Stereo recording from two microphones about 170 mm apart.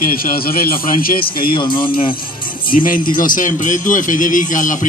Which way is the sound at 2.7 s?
55° left (ahead or behind).